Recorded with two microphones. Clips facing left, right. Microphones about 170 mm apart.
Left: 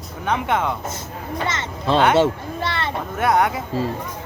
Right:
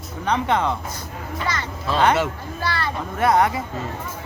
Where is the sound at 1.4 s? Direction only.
25° left (ahead or behind).